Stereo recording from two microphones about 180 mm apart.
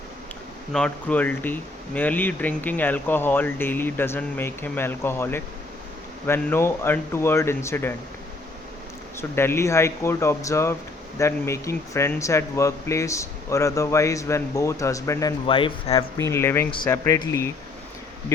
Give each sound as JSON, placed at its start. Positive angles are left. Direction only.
{"t": 0.7, "sound": "speech", "side_deg": 5}
{"t": 9.3, "sound": "speech", "side_deg": 15}
{"t": 16.1, "sound": "speech", "side_deg": 15}